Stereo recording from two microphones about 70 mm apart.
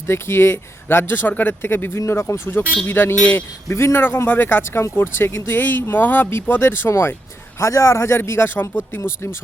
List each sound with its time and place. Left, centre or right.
0.1 s a man's voice: left